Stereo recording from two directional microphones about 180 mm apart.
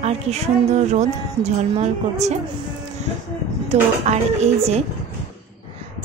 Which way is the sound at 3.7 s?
40° right (ahead or behind).